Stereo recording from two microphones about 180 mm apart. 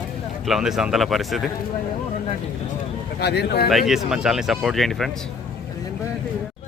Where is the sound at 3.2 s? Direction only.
65° left (ahead or behind).